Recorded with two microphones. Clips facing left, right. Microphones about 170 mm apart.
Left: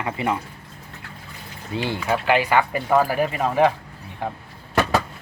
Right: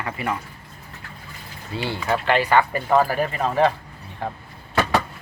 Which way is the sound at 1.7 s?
15° left (ahead or behind).